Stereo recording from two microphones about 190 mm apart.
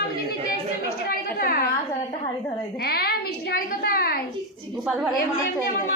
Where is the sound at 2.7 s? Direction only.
55° left (ahead or behind).